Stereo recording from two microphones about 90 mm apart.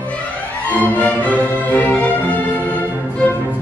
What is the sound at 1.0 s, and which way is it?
Music, 15° left (ahead or behind).